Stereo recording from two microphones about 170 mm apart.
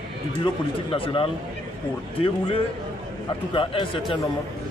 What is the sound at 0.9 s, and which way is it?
Speech, 30° left (ahead or behind).